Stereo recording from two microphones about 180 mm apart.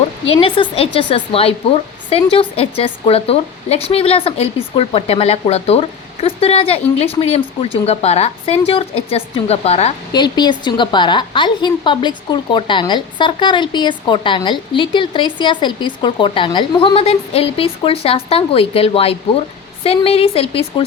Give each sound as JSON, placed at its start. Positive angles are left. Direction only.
{"t": 0.3, "sound": "speech", "side_deg": 30}
{"t": 10.1, "sound": "a woman's voice", "side_deg": 25}